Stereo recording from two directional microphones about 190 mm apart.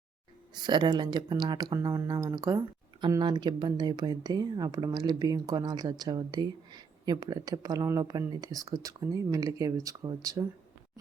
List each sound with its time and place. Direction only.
0.5 s speech: 20° right (ahead or behind)